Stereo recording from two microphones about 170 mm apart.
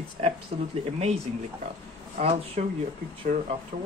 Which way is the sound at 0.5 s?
35° right (ahead or behind).